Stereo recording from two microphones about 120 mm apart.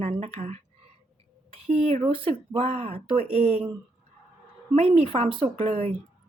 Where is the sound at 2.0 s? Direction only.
50° right (ahead or behind).